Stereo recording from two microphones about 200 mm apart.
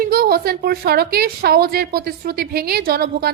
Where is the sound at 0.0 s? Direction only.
50° right (ahead or behind).